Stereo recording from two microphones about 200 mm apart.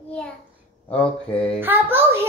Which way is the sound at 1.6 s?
10° right (ahead or behind).